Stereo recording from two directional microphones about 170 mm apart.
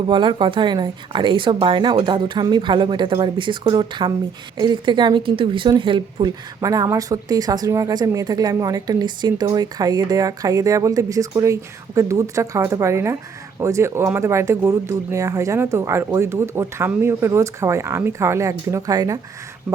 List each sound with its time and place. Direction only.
0.1 s a woman's voice: 30° right (ahead or behind)